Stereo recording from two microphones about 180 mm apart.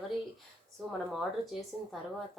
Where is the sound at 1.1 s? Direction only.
Centre (ahead or behind).